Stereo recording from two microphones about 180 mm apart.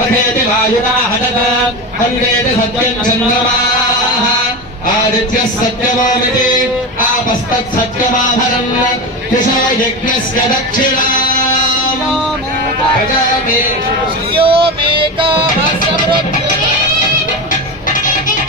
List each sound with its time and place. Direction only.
14.3 s music: 30° right (ahead or behind)